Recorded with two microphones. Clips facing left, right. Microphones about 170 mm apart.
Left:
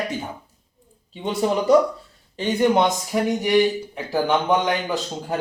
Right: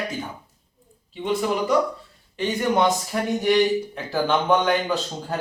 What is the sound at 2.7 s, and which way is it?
Speech, 15° left (ahead or behind).